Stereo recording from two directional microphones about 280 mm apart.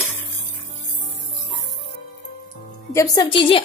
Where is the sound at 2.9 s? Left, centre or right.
Centre.